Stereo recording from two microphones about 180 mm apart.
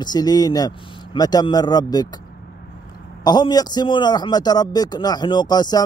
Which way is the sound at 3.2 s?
25° left (ahead or behind).